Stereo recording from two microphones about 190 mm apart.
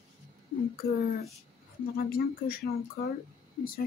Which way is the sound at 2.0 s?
50° left (ahead or behind).